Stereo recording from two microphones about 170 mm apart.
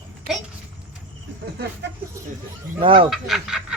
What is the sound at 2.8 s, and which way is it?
Speech, 30° right (ahead or behind).